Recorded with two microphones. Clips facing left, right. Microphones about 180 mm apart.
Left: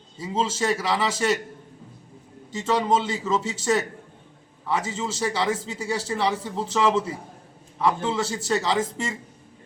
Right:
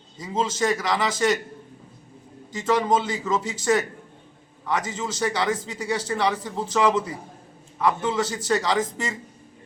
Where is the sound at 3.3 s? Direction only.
25° left (ahead or behind).